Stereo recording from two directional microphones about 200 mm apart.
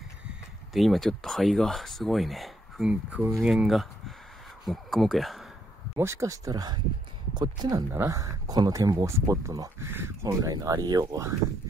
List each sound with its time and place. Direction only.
0.7 s speech: centre (ahead or behind)
5.9 s speech: 15° right (ahead or behind)